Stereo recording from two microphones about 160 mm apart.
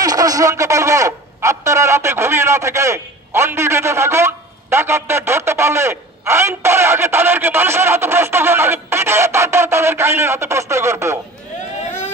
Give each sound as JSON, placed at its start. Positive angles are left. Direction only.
{"t": 0.0, "sound": "a man's voice", "side_deg": -25}